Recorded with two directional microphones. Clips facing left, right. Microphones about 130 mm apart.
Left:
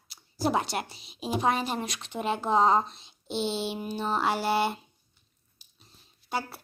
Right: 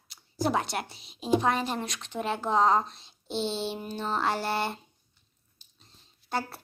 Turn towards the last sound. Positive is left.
turn(degrees=0)  # may be behind; listen again after turning